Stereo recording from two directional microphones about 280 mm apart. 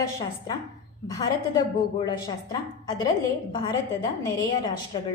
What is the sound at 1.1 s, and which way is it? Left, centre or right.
A woman's voice, centre.